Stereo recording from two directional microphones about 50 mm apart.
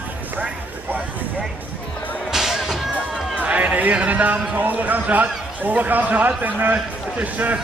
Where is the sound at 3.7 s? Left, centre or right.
Right.